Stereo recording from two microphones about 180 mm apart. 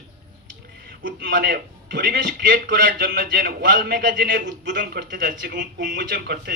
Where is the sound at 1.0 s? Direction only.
60° right (ahead or behind).